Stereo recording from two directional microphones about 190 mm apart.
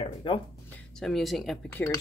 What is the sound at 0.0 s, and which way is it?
Speech, 30° left (ahead or behind).